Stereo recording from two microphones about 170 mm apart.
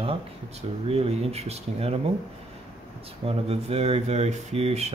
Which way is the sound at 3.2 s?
35° right (ahead or behind).